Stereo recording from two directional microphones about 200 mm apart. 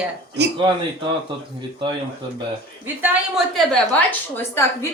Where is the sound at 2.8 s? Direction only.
10° right (ahead or behind).